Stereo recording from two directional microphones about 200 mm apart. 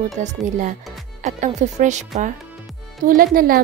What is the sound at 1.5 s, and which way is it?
A woman's voice, 35° right (ahead or behind).